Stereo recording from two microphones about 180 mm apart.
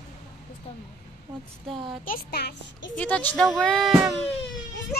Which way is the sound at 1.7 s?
30° right (ahead or behind).